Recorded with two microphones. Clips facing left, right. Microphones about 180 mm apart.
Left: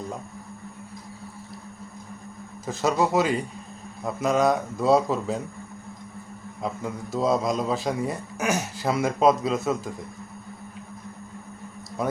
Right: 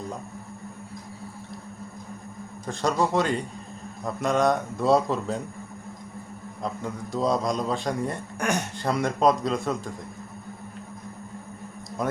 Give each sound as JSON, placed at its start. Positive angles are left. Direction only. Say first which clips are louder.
{"t": 2.6, "sound": "a man's voice", "louder": "left 1 dB", "side_deg": 5}
{"t": 6.6, "sound": "a man's voice", "louder": "left 1 dB", "side_deg": 5}